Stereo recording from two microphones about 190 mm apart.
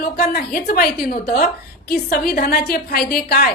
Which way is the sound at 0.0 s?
55° left (ahead or behind).